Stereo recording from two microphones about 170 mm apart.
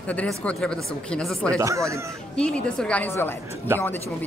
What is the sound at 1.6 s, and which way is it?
Speech, 15° right (ahead or behind).